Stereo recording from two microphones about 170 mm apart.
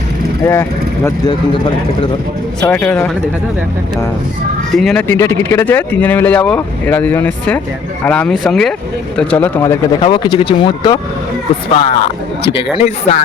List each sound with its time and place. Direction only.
0.4 s speech: 20° left (ahead or behind)
2.6 s speech: 10° left (ahead or behind)
4.7 s speech: centre (ahead or behind)
5.0 s speech: 15° left (ahead or behind)
10.0 s speech: 30° left (ahead or behind)
11.8 s speech: 35° left (ahead or behind)